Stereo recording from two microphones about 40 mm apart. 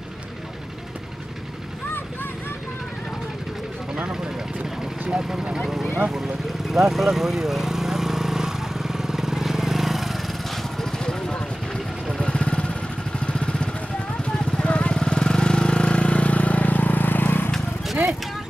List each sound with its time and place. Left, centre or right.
4.1 s vehicle: centre
5.1 s speech: centre
6.0 s lawn mower: centre
11.7 s vehicle: left